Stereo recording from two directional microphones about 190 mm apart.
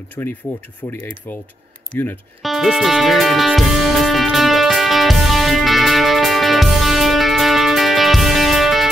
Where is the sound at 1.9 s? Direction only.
10° left (ahead or behind).